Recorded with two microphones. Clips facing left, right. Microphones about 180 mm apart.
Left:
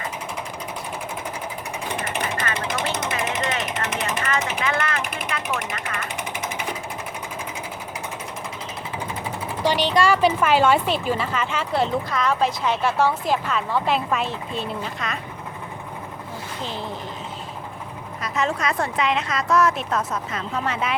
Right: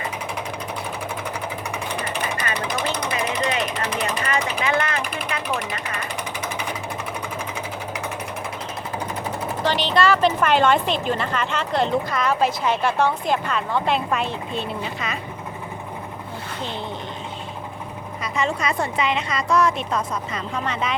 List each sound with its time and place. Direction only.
2.0 s vehicle: 25° left (ahead or behind)
4.6 s a sound: 20° right (ahead or behind)
5.3 s vehicle: 20° right (ahead or behind)
9.6 s a woman's voice: 10° left (ahead or behind)
18.2 s a woman's voice: centre (ahead or behind)